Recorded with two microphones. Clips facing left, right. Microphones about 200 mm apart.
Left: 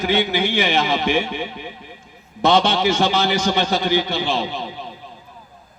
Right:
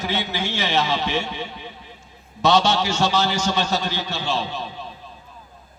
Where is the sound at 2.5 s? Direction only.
55° left (ahead or behind).